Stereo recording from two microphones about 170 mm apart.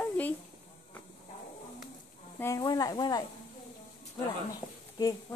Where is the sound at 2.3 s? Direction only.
15° left (ahead or behind).